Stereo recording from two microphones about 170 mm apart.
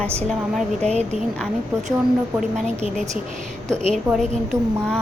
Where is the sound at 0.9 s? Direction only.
40° right (ahead or behind).